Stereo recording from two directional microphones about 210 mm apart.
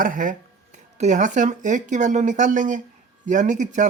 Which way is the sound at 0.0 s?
40° right (ahead or behind).